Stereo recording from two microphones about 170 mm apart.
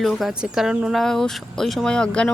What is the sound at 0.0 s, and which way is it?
Speech, centre (ahead or behind).